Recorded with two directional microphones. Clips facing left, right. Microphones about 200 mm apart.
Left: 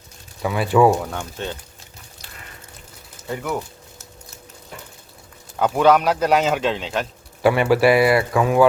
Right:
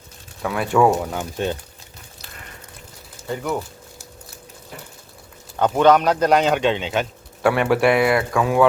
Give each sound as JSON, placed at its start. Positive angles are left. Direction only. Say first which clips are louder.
{"t": 0.4, "sound": "a man's voice", "louder": "left 1 dB", "side_deg": 5}
{"t": 1.2, "sound": "speech", "louder": "right 5 dB", "side_deg": -15}
{"t": 3.2, "sound": "a man's voice", "louder": "right 1 dB", "side_deg": 0}
{"t": 5.5, "sound": "a man's voice", "louder": "right 1 dB", "side_deg": 5}